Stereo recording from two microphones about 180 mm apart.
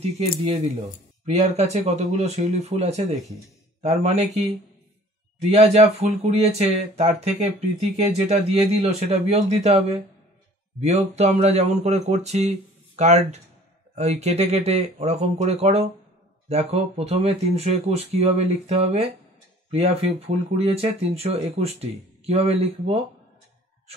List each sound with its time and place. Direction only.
0.5 s speech: 35° right (ahead or behind)
5.5 s speech: 35° right (ahead or behind)